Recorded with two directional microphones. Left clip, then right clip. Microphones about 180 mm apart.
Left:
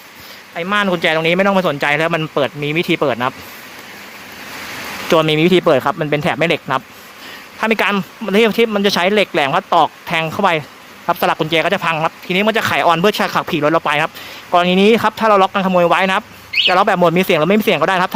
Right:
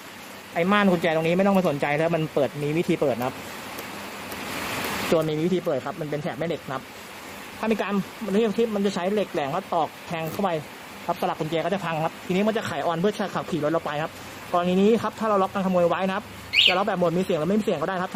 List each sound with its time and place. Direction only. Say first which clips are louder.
0.5 s speech: left 5 dB; centre (ahead or behind)
0.9 s speech: left 8 dB; 10° left (ahead or behind)
5.1 s speech: left 12 dB; 20° left (ahead or behind)